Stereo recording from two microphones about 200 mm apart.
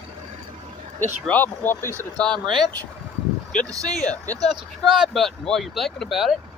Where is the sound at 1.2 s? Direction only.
10° left (ahead or behind).